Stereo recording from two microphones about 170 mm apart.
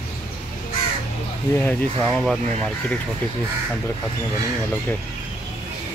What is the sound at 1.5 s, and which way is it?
Speech, 10° left (ahead or behind).